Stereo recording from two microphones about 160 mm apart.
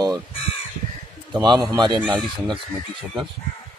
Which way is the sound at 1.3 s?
25° right (ahead or behind).